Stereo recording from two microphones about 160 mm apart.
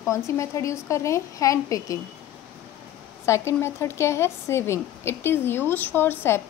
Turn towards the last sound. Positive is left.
turn(degrees=15)  # may be behind; listen again after turning